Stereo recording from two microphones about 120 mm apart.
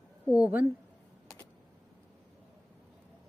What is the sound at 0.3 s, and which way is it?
Speech, 10° right (ahead or behind).